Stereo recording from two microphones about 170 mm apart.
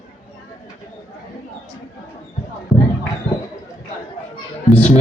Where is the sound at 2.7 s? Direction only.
20° left (ahead or behind).